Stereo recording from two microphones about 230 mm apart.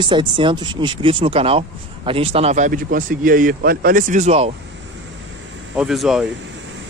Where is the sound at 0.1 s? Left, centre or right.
Right.